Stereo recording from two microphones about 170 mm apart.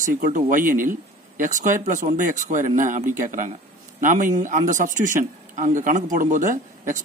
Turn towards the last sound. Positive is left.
turn(degrees=-50)  # may be behind; listen again after turning